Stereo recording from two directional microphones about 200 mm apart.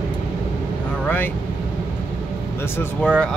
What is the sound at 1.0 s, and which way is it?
Vehicle, 10° left (ahead or behind).